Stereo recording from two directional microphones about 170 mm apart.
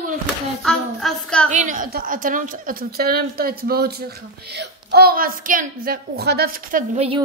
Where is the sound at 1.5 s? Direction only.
50° right (ahead or behind).